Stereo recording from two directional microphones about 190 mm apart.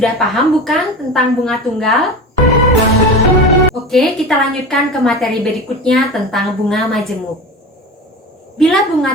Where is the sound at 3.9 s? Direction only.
5° left (ahead or behind).